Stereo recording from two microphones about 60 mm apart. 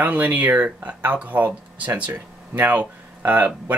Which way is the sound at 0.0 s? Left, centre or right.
Right.